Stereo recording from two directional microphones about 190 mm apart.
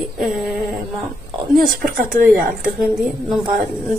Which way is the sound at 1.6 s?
50° right (ahead or behind).